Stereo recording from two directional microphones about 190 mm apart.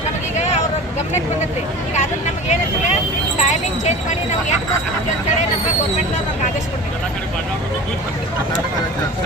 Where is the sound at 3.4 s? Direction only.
40° left (ahead or behind).